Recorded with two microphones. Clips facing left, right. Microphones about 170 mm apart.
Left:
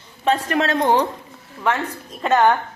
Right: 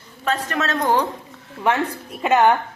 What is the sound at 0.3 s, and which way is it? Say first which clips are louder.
Speech: left 4 dB; 30° left (ahead or behind).